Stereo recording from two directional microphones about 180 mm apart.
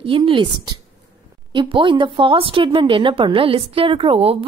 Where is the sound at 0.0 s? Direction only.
30° right (ahead or behind).